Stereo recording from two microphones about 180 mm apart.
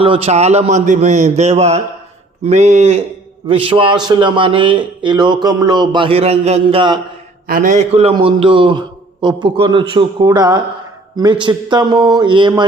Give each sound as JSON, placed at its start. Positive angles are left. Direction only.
{"t": 0.0, "sound": "a man's voice", "side_deg": -30}
{"t": 7.4, "sound": "a man's voice", "side_deg": -50}